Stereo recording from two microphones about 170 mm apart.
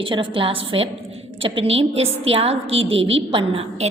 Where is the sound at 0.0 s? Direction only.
30° right (ahead or behind).